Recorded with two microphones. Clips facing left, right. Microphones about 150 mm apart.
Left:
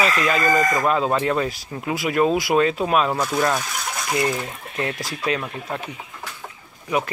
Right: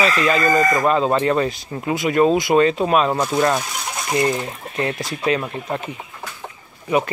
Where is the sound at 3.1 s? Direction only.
20° right (ahead or behind).